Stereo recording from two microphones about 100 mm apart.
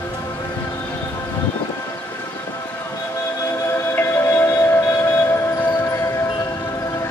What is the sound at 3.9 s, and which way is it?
Music, 25° left (ahead or behind).